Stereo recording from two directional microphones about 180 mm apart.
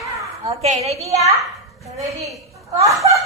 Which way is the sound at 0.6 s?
35° right (ahead or behind).